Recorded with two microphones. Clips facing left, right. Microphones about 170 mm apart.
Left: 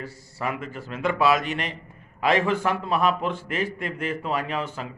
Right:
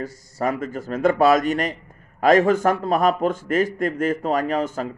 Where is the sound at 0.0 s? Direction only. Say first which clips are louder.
Right 6 dB; 45° right (ahead or behind).